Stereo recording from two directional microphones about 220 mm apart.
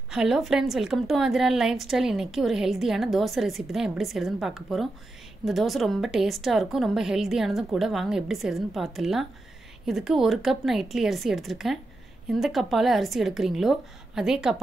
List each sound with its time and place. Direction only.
0.1 s a woman's voice: centre (ahead or behind)